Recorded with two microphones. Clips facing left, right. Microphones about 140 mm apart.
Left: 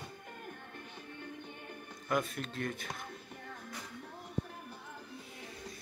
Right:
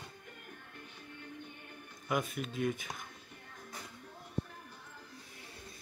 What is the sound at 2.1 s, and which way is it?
Speech, 5° right (ahead or behind).